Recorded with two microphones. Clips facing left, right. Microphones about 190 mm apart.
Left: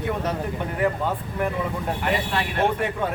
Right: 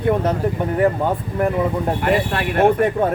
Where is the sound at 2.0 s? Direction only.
55° right (ahead or behind).